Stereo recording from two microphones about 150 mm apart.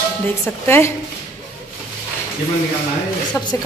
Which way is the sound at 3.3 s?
15° left (ahead or behind).